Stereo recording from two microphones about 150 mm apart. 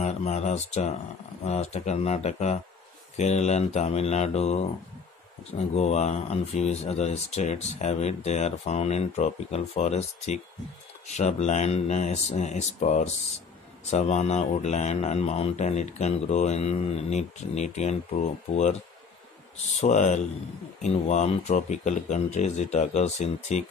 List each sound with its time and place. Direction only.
0.0 s speech: 50° left (ahead or behind)